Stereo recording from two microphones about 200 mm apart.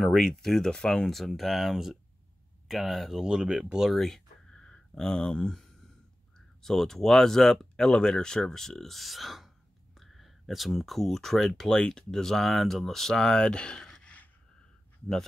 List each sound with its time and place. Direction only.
0.0 s speech: centre (ahead or behind)